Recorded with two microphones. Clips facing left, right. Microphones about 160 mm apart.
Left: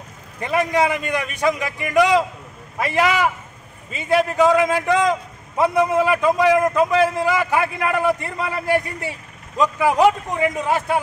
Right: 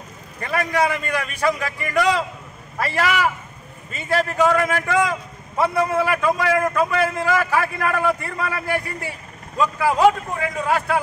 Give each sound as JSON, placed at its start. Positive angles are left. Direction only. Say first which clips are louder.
{"t": 0.4, "sound": "a man's voice", "louder": "left 2 dB", "side_deg": 20}